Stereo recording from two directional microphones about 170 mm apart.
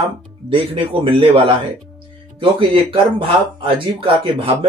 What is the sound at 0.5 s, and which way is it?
Speech, 30° right (ahead or behind).